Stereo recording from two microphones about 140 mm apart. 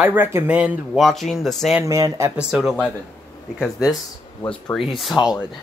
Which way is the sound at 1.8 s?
25° right (ahead or behind).